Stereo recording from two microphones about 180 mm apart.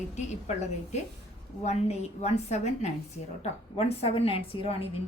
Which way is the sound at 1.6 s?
35° left (ahead or behind).